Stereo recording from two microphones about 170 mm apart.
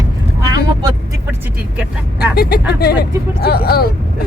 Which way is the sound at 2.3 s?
65° left (ahead or behind).